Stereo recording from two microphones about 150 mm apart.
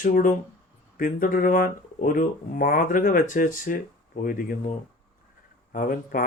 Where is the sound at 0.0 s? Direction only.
65° left (ahead or behind).